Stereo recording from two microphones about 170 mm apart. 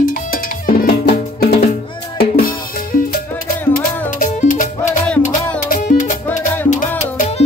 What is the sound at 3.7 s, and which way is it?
Music, 50° left (ahead or behind).